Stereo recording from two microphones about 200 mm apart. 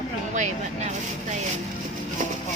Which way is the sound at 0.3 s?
35° right (ahead or behind).